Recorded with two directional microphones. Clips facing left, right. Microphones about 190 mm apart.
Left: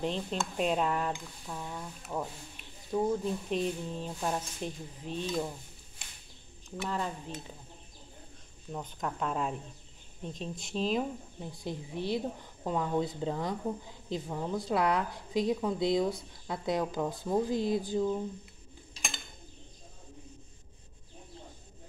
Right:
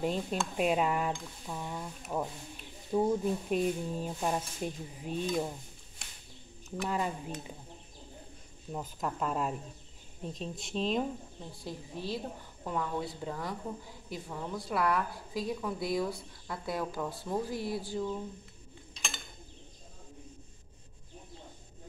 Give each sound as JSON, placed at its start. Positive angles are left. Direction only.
{"t": 0.0, "sound": "speech", "side_deg": -5}
{"t": 6.9, "sound": "speech", "side_deg": -10}
{"t": 8.7, "sound": "speech", "side_deg": -5}
{"t": 11.6, "sound": "a woman's voice", "side_deg": 15}